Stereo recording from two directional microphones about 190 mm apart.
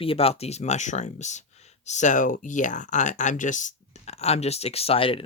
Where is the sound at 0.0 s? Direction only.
30° left (ahead or behind).